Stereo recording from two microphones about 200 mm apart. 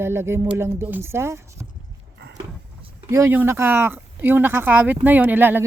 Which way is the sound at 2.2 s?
55° right (ahead or behind).